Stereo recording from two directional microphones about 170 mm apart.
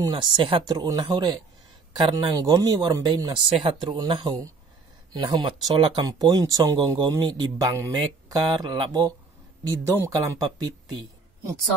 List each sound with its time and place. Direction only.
0.0 s speech: 30° right (ahead or behind)
3.4 s speech: 35° right (ahead or behind)